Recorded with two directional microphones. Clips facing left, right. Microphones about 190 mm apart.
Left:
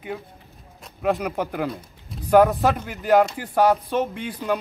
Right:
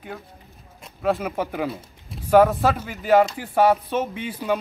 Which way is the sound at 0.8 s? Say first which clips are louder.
Even; centre (ahead or behind).